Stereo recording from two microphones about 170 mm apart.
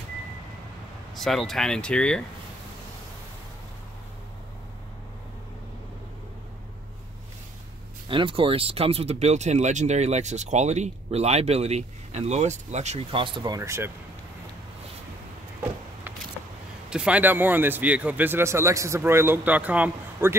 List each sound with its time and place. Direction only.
1.1 s speech: centre (ahead or behind)
8.1 s speech: 30° right (ahead or behind); by 13.9 s 15° right (ahead or behind)
16.9 s speech: 5° right (ahead or behind)